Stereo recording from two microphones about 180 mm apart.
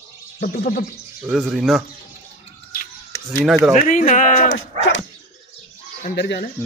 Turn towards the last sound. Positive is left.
turn(degrees=70)  # may be behind; listen again after turning